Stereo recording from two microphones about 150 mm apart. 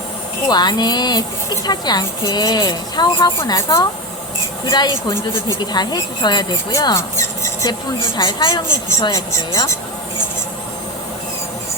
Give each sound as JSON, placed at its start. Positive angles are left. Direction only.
{"t": 0.4, "sound": "a woman's voice", "side_deg": 30}